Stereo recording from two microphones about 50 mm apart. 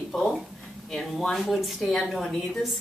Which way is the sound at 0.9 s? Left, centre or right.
Centre.